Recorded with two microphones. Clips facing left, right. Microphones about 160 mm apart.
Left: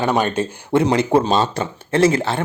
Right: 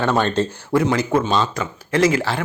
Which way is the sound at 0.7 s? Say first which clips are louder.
Left 2 dB; 25° left (ahead or behind).